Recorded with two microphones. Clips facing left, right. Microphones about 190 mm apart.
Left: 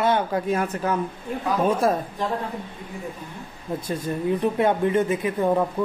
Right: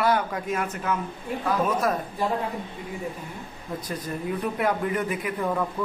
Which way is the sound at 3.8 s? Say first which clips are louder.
Left 6 dB; 25° left (ahead or behind).